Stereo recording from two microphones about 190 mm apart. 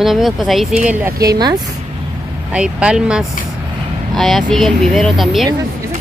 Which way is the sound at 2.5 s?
5° right (ahead or behind).